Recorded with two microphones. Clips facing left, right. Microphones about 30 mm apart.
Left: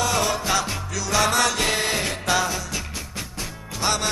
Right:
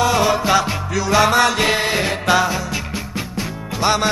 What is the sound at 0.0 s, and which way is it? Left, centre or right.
Music, centre.